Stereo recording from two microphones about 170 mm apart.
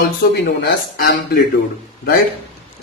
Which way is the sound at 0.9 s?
65° left (ahead or behind).